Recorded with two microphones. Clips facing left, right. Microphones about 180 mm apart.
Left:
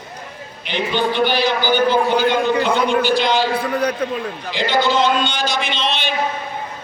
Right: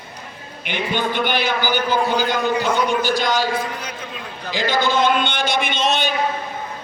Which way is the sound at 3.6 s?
65° left (ahead or behind).